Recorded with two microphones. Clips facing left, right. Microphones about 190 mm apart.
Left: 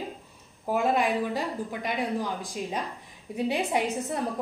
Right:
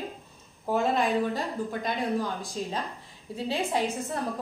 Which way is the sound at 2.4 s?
15° left (ahead or behind).